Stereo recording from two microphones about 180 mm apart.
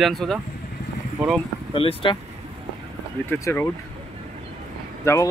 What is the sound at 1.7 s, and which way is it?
Speech, 30° left (ahead or behind).